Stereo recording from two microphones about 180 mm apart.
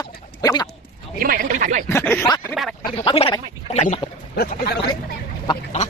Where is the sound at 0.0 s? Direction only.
20° left (ahead or behind).